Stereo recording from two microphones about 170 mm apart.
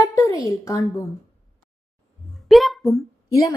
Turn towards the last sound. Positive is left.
turn(degrees=20)  # may be behind; listen again after turning